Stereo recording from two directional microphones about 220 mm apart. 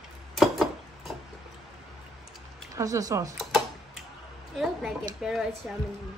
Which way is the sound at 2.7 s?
15° right (ahead or behind).